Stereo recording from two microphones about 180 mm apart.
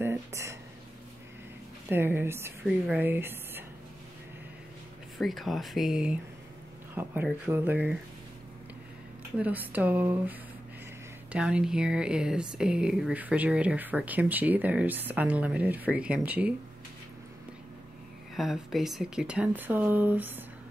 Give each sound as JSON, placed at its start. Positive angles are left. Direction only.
{"t": 0.0, "sound": "speech", "side_deg": -15}
{"t": 1.9, "sound": "a woman's voice", "side_deg": -10}
{"t": 5.2, "sound": "speech", "side_deg": 0}
{"t": 7.2, "sound": "speech", "side_deg": -10}
{"t": 9.4, "sound": "speech", "side_deg": -10}
{"t": 11.3, "sound": "speech", "side_deg": -5}
{"t": 18.3, "sound": "speech", "side_deg": 0}